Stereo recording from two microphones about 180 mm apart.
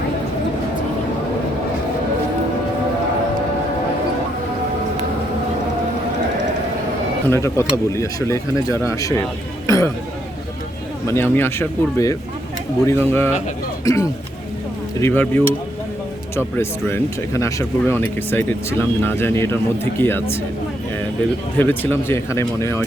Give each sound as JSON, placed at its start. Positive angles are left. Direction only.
{"t": 7.3, "sound": "speech", "side_deg": 15}
{"t": 9.6, "sound": "a sound", "side_deg": 20}
{"t": 11.0, "sound": "speech", "side_deg": 15}
{"t": 16.6, "sound": "speech", "side_deg": 15}
{"t": 21.6, "sound": "speech", "side_deg": 10}